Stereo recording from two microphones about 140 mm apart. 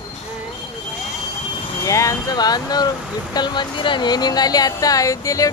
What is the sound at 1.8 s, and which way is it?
Speech, 20° left (ahead or behind).